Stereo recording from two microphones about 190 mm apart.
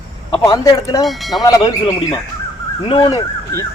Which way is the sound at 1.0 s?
Centre (ahead or behind).